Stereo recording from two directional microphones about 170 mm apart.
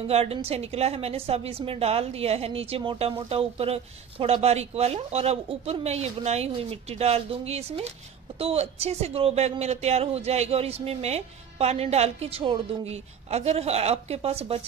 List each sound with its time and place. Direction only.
0.1 s a woman's voice: 35° right (ahead or behind)